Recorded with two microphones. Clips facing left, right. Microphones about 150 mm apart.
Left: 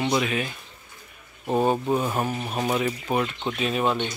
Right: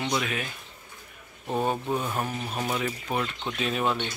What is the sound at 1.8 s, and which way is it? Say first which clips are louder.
Speech: left 5 dB; 25° left (ahead or behind).